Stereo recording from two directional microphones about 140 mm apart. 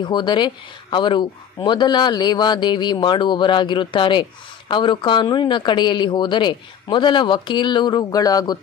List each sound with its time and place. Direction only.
0.0 s speech: 35° left (ahead or behind)